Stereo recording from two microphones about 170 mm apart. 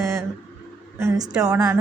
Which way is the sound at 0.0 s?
20° right (ahead or behind).